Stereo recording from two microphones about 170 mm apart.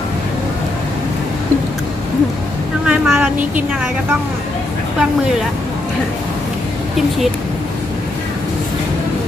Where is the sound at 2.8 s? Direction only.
5° right (ahead or behind).